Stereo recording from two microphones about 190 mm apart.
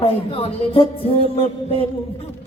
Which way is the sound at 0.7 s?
30° left (ahead or behind).